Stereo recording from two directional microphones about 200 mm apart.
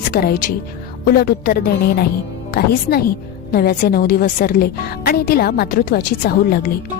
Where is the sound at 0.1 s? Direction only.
50° left (ahead or behind).